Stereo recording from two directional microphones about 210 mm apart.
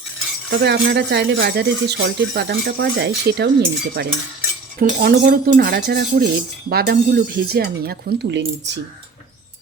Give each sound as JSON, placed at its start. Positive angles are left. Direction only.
{"t": 0.6, "sound": "speech", "side_deg": -50}